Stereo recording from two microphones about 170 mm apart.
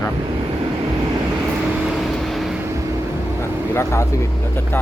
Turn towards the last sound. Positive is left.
turn(degrees=15)  # may be behind; listen again after turning